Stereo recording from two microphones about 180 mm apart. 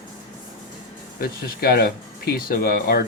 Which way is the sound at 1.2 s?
60° left (ahead or behind).